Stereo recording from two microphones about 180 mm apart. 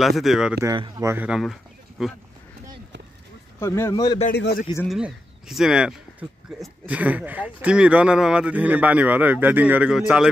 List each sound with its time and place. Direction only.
0.2 s speech: centre (ahead or behind)
0.6 s speech: 20° right (ahead or behind); by 2.1 s centre (ahead or behind)
3.5 s speech: 15° left (ahead or behind)
4.3 s a man's voice: 60° left (ahead or behind)
4.8 s speech: centre (ahead or behind)